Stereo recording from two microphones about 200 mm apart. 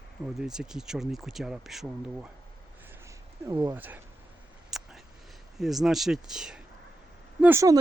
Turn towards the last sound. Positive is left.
turn(degrees=-10)  # may be behind; listen again after turning